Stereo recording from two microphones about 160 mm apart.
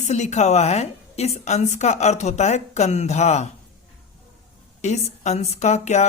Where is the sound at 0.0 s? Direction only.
45° left (ahead or behind).